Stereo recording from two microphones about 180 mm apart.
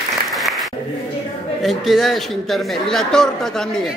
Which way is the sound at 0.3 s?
Centre (ahead or behind).